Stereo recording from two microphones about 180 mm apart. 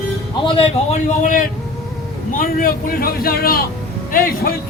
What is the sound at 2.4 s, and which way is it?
A man's voice, 50° left (ahead or behind).